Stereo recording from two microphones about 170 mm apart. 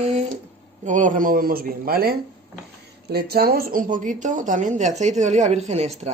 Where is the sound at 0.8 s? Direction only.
50° right (ahead or behind).